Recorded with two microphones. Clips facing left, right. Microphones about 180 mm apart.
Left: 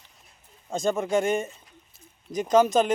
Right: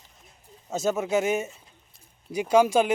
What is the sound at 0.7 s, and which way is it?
Speech, 5° right (ahead or behind).